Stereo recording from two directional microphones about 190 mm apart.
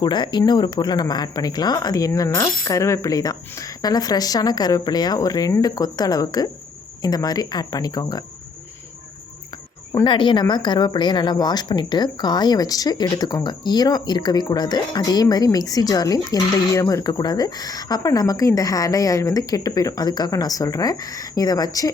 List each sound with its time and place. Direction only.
0.0 s speech: 25° left (ahead or behind)
10.0 s speech: 25° left (ahead or behind)